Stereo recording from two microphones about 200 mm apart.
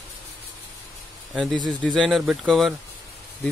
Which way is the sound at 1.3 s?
Centre (ahead or behind).